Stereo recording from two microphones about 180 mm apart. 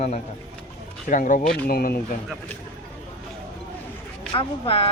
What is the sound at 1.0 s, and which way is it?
Speech, 45° left (ahead or behind).